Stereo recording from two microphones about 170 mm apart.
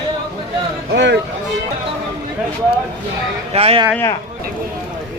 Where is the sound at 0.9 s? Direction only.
90° right.